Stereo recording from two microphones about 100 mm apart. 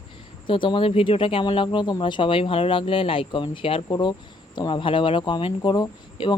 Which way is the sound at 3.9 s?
50° left (ahead or behind).